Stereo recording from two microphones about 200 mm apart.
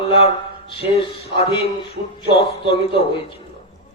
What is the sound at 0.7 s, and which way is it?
Speech, 25° left (ahead or behind).